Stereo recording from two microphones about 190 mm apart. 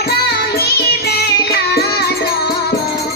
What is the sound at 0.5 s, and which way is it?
Music, 55° left (ahead or behind).